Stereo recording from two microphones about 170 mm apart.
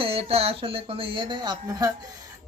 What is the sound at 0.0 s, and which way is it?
Speech, 35° right (ahead or behind).